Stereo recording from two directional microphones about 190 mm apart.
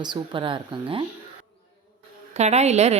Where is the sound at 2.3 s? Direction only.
35° right (ahead or behind).